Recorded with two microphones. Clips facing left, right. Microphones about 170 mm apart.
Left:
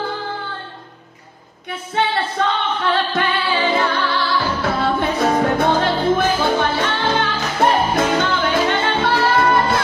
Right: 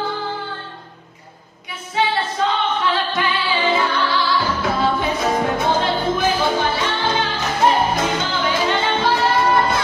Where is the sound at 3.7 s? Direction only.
Centre (ahead or behind).